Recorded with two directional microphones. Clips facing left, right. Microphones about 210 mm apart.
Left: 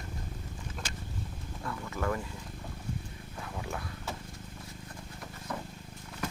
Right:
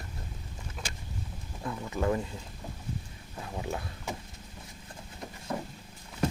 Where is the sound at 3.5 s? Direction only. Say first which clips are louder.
Right 4 dB; 20° right (ahead or behind).